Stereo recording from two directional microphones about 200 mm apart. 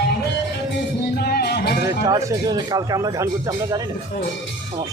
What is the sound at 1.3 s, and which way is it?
Music, 55° left (ahead or behind).